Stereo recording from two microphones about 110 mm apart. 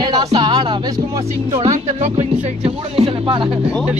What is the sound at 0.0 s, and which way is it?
Music, 40° right (ahead or behind).